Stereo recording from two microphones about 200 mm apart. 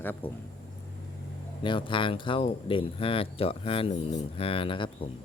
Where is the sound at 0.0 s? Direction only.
10° left (ahead or behind).